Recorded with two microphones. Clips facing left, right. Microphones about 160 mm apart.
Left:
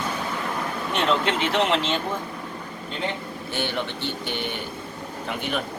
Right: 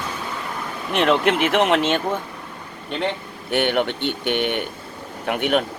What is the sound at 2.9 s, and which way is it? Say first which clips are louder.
A man's voice: right 5 dB; 70° right (ahead or behind).